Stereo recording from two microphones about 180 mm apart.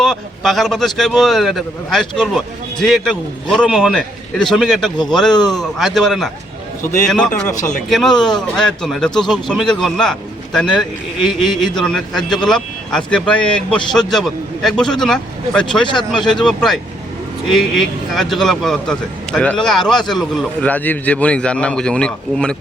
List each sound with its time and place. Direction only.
0.0 s speech: centre (ahead or behind)
15.9 s speech: 25° left (ahead or behind)
16.2 s speech: centre (ahead or behind)